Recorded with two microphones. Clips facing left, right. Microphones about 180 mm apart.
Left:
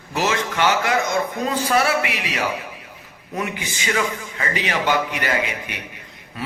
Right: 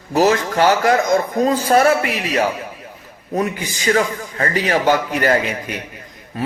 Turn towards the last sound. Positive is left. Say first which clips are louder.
# right 6 dB
turn(degrees=-45)  # may be behind; listen again after turning